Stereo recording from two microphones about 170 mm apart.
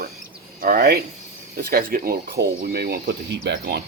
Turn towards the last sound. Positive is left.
turn(degrees=-85)